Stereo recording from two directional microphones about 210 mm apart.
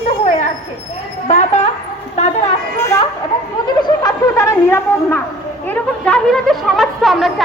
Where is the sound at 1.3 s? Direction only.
35° left (ahead or behind).